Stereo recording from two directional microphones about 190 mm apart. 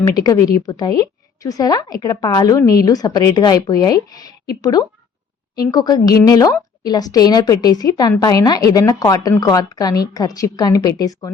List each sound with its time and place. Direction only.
0.0 s a woman's voice: 20° left (ahead or behind)